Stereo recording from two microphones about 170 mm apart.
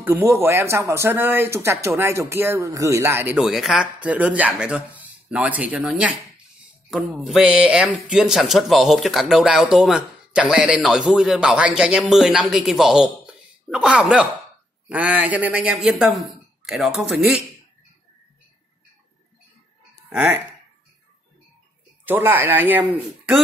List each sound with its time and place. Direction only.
0.0 s speech: 15° right (ahead or behind)
3.3 s speech: centre (ahead or behind)
20.1 s speech: 10° right (ahead or behind)
22.0 s speech: 10° right (ahead or behind)